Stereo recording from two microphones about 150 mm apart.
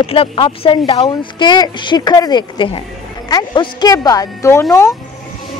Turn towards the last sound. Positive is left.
turn(degrees=20)  # may be behind; listen again after turning